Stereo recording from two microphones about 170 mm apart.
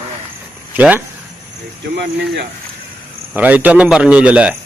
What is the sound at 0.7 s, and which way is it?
Speech, 10° right (ahead or behind).